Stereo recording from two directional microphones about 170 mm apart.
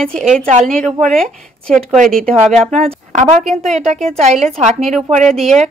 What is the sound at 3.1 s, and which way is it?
A woman's voice, 40° right (ahead or behind).